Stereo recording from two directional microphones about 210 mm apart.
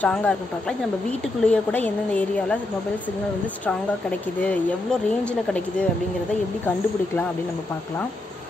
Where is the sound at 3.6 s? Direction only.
5° left (ahead or behind).